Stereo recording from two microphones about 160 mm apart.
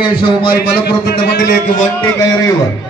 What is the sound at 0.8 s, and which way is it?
Speech, 85° left.